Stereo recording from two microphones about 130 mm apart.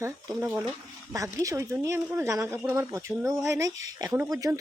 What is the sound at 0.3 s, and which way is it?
Speech, 5° right (ahead or behind).